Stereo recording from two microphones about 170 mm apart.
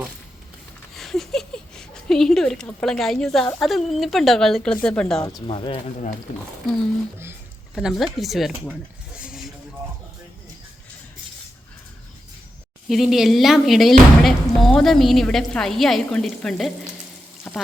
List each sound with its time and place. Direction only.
0.9 s speech: centre (ahead or behind)
5.5 s speech: 30° left (ahead or behind)
7.8 s speech: centre (ahead or behind)
9.2 s vehicle: 5° right (ahead or behind)
12.9 s speech: centre (ahead or behind)
17.5 s frying: 5° left (ahead or behind)